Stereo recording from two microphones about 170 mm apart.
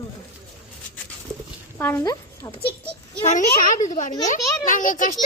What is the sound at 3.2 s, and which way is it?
Speech, 50° left (ahead or behind).